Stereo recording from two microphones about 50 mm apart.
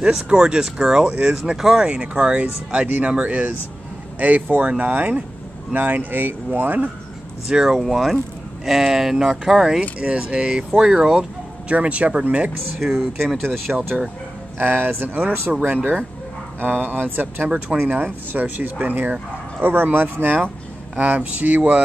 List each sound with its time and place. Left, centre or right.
0.0 s speech: centre
1.9 s speech: right
7.4 s speech: centre
7.8 s speech: centre
11.7 s speech: right
12.8 s speech: centre
13.7 s speech: centre
14.6 s speech: right